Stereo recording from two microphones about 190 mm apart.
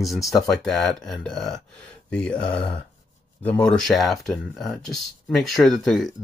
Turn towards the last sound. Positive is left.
turn(degrees=0)  # may be behind; listen again after turning